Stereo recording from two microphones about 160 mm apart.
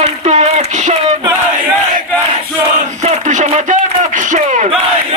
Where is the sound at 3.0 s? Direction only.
50° right (ahead or behind).